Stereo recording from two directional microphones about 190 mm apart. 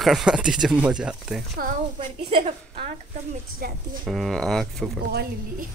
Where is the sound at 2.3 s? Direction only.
35° right (ahead or behind).